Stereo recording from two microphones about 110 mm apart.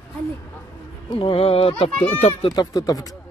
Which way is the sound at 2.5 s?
35° left (ahead or behind).